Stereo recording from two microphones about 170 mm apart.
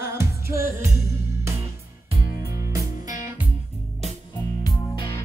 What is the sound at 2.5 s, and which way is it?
Music, 20° right (ahead or behind).